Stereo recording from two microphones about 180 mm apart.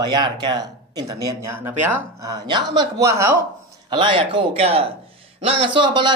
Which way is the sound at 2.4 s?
25° right (ahead or behind).